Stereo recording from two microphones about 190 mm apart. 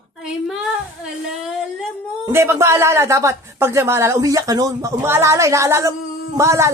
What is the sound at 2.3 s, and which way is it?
Speech, 15° right (ahead or behind).